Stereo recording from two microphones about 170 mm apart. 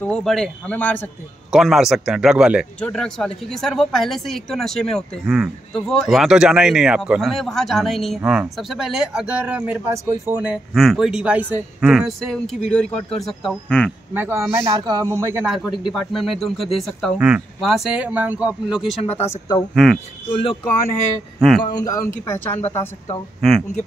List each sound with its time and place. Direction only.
0.0 s speech: 5° left (ahead or behind)
1.5 s speech: centre (ahead or behind)
14.1 s a man's voice: 15° right (ahead or behind)
15.4 s speech: 5° right (ahead or behind)
19.0 s speech: 40° left (ahead or behind)
19.7 s speech: centre (ahead or behind)
21.4 s speech: centre (ahead or behind)
21.6 s speech: 20° left (ahead or behind)